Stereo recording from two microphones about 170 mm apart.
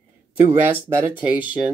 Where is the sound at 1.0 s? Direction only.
10° right (ahead or behind).